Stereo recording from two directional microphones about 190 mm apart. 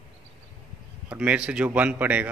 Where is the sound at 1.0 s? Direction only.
5° right (ahead or behind).